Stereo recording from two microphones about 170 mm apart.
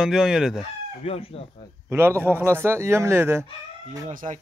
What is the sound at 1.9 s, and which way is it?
Speech, 15° right (ahead or behind).